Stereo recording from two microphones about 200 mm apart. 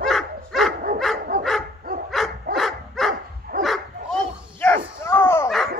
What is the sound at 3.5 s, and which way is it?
Dog, 50° right (ahead or behind).